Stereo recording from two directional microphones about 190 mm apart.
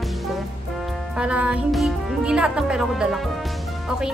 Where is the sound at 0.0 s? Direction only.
Centre (ahead or behind).